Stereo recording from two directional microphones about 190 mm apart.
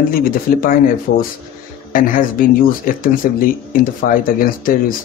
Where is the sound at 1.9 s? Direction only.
45° left (ahead or behind).